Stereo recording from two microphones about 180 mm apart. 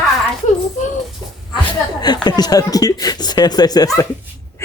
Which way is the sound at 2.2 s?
20° left (ahead or behind).